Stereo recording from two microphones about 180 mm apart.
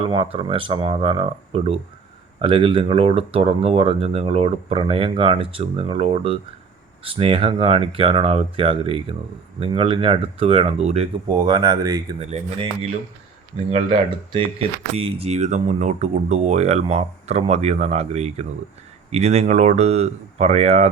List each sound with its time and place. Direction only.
0.0 s speech: 30° right (ahead or behind)
12.2 s speech: 35° right (ahead or behind)